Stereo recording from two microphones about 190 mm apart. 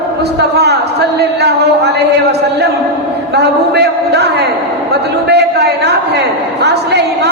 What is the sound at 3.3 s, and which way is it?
A man's voice, 60° right (ahead or behind).